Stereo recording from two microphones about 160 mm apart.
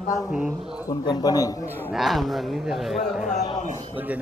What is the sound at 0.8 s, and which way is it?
A man's voice, 25° left (ahead or behind).